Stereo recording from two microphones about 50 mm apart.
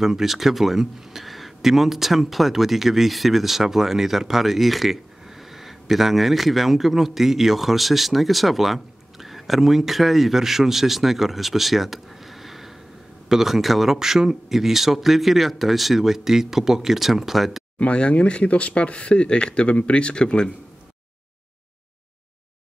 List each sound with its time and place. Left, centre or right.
0.0 s speech: centre
17.7 s speech: left